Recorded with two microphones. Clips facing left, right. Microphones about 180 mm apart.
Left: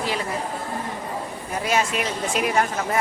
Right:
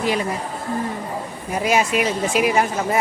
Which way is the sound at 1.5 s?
15° right (ahead or behind).